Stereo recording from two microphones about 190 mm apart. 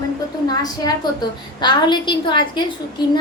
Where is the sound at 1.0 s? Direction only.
25° left (ahead or behind).